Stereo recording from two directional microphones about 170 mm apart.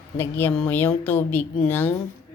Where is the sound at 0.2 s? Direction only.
10° left (ahead or behind).